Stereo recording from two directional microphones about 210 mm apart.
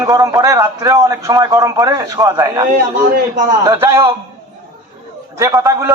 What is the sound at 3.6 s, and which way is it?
Speech, 15° right (ahead or behind).